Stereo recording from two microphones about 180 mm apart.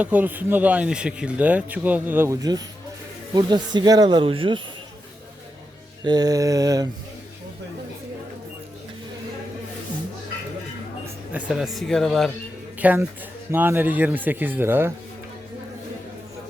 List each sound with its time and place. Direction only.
0.0 s speech: 10° right (ahead or behind); by 4.6 s 30° right (ahead or behind)
6.1 s speech: 20° right (ahead or behind)
11.0 s speech: 5° right (ahead or behind)
12.8 s speech: 10° right (ahead or behind)